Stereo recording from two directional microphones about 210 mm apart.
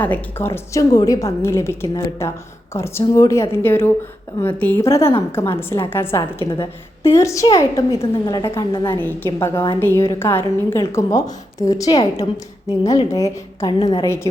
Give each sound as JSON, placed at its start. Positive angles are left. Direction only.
{"t": 0.0, "sound": "a woman's voice", "side_deg": 10}